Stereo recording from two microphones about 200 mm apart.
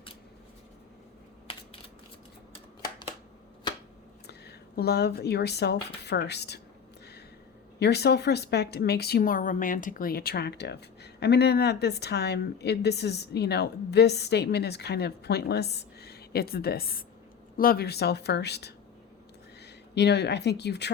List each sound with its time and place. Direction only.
4.3 s speech: 55° left (ahead or behind)
7.8 s speech: 55° left (ahead or behind)
19.9 s speech: 55° left (ahead or behind)